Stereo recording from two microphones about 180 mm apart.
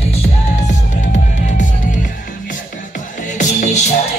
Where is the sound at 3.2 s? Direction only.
45° left (ahead or behind).